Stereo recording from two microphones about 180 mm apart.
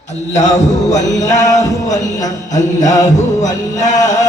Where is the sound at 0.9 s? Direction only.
20° left (ahead or behind).